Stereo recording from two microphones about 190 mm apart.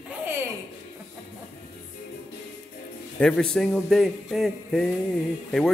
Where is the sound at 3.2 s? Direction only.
5° left (ahead or behind).